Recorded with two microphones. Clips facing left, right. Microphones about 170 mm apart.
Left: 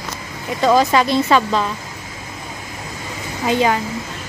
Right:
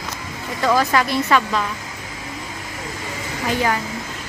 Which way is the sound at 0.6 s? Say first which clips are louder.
Left 4 dB; 20° left (ahead or behind).